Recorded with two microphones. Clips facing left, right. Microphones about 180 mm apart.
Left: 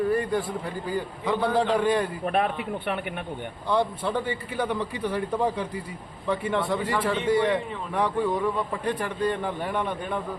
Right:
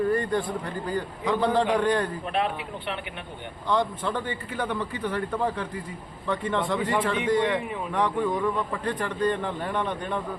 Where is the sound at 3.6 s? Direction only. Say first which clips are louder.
Left 1 dB; 10° left (ahead or behind).